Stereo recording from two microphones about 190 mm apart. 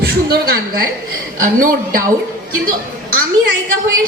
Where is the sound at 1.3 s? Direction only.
45° right (ahead or behind).